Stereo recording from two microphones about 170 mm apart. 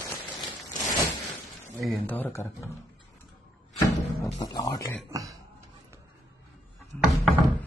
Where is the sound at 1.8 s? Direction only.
5° left (ahead or behind).